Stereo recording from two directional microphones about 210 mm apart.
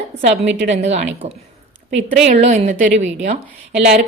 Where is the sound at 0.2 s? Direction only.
30° right (ahead or behind).